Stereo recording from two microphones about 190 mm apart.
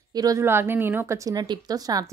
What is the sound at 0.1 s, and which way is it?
A woman's voice, 20° right (ahead or behind).